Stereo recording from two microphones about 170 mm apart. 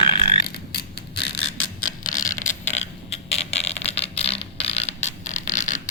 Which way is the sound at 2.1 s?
50° left (ahead or behind).